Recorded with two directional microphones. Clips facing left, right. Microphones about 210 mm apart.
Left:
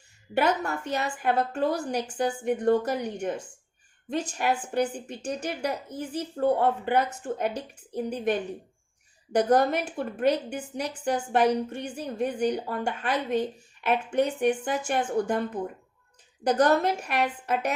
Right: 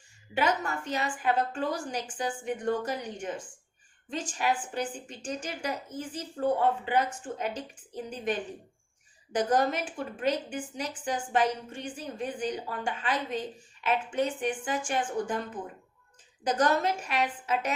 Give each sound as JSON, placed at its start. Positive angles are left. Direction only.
{"t": 0.3, "sound": "a woman's voice", "side_deg": 60}
{"t": 16.4, "sound": "a woman's voice", "side_deg": 60}